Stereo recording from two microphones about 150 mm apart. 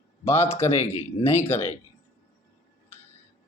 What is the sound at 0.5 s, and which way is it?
Speech, 15° left (ahead or behind).